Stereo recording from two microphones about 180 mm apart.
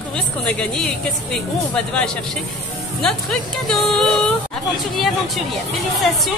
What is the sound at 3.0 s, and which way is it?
Speech, 5° left (ahead or behind).